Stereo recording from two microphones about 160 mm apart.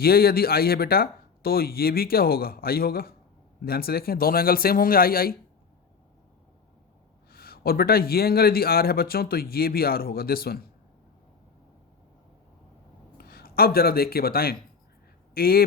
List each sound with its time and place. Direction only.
0.0 s a man's voice: 70° left (ahead or behind)
7.3 s a man's voice: 70° left (ahead or behind)
13.1 s a man's voice: 70° left (ahead or behind)